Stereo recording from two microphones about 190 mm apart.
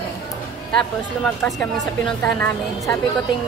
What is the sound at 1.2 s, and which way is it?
A woman's voice, 5° left (ahead or behind).